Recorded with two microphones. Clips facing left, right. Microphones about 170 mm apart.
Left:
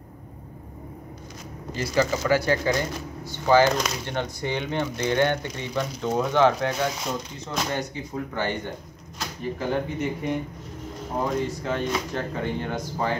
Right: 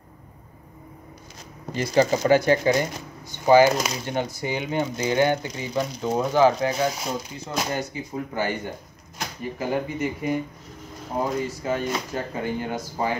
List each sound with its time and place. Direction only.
2.2 s speech: 20° right (ahead or behind)